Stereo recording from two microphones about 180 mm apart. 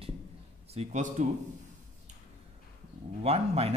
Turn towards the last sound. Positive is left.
turn(degrees=-35)  # may be behind; listen again after turning